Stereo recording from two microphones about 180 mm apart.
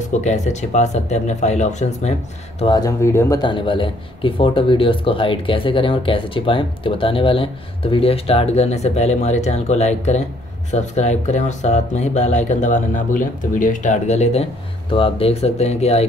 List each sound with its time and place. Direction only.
0.1 s speech: 40° left (ahead or behind)
2.6 s speech: 20° left (ahead or behind)